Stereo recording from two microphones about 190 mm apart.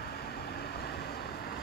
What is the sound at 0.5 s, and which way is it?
Vehicle, 55° left (ahead or behind).